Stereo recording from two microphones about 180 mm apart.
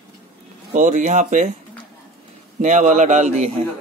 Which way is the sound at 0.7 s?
45° right (ahead or behind).